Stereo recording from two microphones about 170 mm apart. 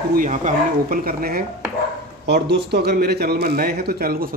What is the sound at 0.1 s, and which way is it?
A man's voice, 50° right (ahead or behind).